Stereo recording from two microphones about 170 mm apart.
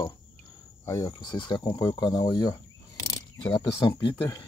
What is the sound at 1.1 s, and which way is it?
Speech, 25° left (ahead or behind).